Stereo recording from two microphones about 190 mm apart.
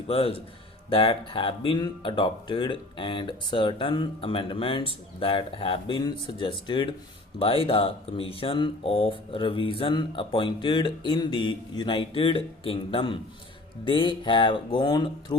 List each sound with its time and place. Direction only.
0.1 s speech: 30° left (ahead or behind)